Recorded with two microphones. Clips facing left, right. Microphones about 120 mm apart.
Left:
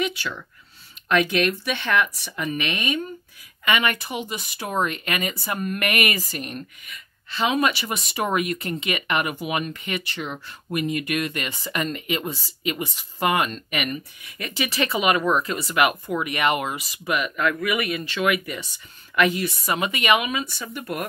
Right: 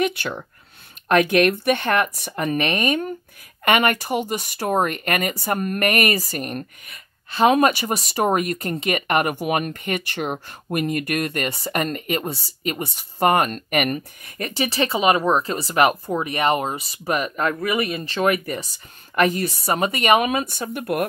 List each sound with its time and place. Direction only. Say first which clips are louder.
0.0 s speech: right 4 dB; 55° right (ahead or behind)